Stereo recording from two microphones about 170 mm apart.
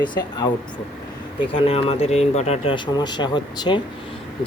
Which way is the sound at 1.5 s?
35° left (ahead or behind).